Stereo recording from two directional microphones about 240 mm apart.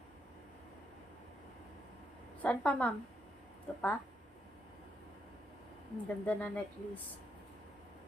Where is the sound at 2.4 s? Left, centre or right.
Centre.